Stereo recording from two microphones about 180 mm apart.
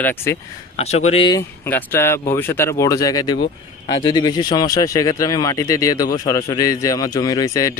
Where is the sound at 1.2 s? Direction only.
15° left (ahead or behind).